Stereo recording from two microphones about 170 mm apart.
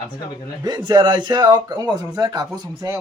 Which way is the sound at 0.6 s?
25° right (ahead or behind).